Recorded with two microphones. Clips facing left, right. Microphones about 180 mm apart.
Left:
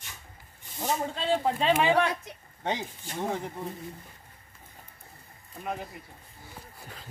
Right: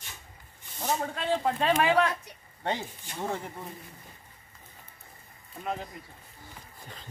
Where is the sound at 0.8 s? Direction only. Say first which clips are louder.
Left 1 dB; 25° left (ahead or behind).